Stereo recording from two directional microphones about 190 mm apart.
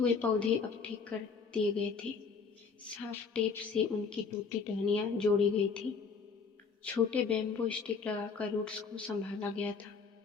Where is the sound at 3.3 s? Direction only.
5° left (ahead or behind).